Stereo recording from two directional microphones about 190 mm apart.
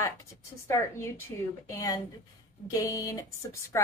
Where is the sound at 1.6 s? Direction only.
15° left (ahead or behind).